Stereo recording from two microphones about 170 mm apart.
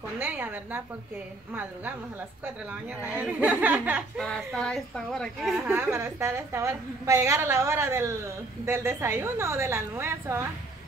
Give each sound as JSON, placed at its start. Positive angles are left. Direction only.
{"t": 0.2, "sound": "a woman's voice", "side_deg": -10}
{"t": 4.2, "sound": "speech", "side_deg": 0}
{"t": 5.7, "sound": "a woman's voice", "side_deg": -15}